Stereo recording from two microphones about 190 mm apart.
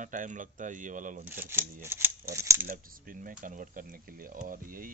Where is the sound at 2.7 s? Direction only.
45° right (ahead or behind).